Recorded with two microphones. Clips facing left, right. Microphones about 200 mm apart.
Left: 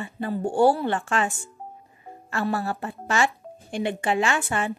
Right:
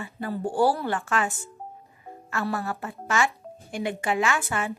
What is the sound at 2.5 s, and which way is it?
Speech, 30° left (ahead or behind).